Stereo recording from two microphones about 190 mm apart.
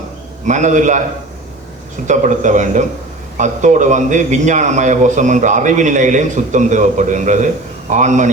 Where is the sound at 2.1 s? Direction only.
40° right (ahead or behind).